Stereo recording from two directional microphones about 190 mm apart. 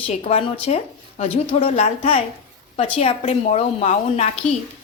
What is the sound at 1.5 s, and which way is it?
A woman's voice, 35° left (ahead or behind).